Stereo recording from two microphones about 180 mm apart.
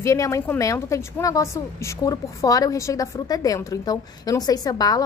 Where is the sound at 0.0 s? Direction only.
15° left (ahead or behind).